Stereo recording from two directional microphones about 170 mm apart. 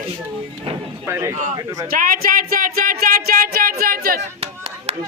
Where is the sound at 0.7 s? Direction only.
35° right (ahead or behind).